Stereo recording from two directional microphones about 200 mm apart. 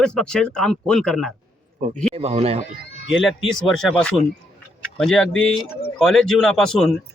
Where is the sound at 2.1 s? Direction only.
30° right (ahead or behind).